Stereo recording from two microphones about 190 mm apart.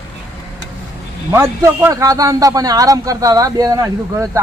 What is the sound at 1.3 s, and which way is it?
A man's voice, 15° right (ahead or behind).